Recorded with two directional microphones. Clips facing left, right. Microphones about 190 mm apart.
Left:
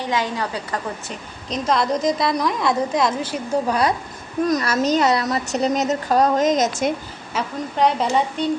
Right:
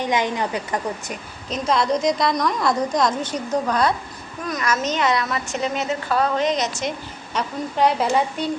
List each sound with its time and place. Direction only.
0.0 s a woman's voice: 20° right (ahead or behind)
1.5 s a woman's voice: centre (ahead or behind)
4.4 s a woman's voice: 35° left (ahead or behind)
7.3 s a woman's voice: centre (ahead or behind)